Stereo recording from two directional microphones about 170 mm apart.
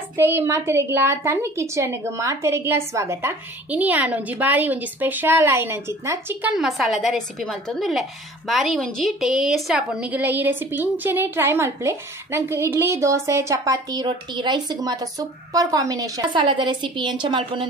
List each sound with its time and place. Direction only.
0.2 s a woman's voice: 15° right (ahead or behind)
6.5 s a woman's voice: centre (ahead or behind); by 17.6 s 30° right (ahead or behind)